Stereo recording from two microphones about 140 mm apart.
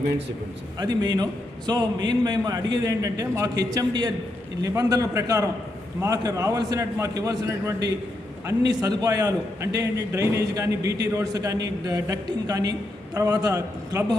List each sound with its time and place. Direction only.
0.8 s a man's voice: 30° right (ahead or behind)